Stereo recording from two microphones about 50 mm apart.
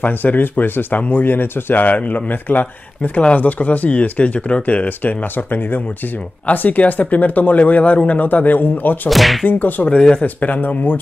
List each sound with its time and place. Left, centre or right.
0.0 s speech: left
9.1 s whip: centre
9.5 s speech: left
9.8 s speech: left
10.2 s speech: left